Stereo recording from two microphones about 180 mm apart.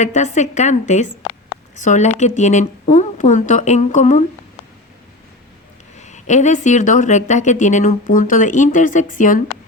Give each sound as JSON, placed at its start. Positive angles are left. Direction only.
{"t": 0.0, "sound": "a woman's voice", "side_deg": 40}
{"t": 6.0, "sound": "speech", "side_deg": 40}